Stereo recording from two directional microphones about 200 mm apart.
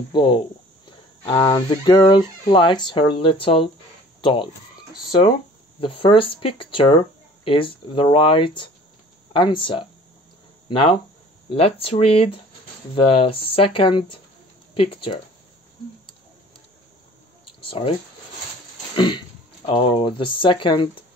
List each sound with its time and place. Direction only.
0.1 s speech: 25° left (ahead or behind)
5.8 s speech: 25° left (ahead or behind)
17.6 s a sound: 25° left (ahead or behind)
19.6 s speech: 25° left (ahead or behind)